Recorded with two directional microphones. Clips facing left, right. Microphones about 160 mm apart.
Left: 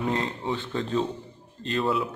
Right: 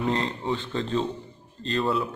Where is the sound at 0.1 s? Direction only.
10° left (ahead or behind).